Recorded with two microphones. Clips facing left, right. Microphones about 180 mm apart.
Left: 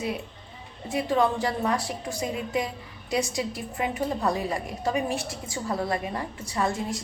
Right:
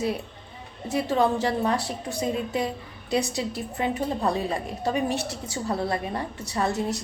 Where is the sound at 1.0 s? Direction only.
30° right (ahead or behind).